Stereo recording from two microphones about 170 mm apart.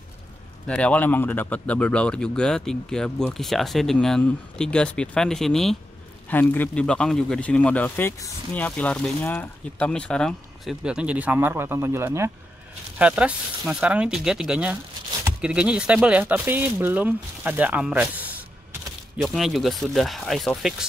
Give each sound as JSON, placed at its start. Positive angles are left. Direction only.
{"t": 0.7, "sound": "speech", "side_deg": 5}